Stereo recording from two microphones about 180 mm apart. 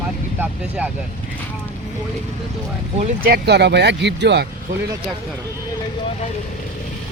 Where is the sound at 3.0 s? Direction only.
40° right (ahead or behind).